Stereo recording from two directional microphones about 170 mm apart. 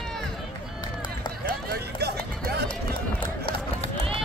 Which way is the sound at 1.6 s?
70° right (ahead or behind).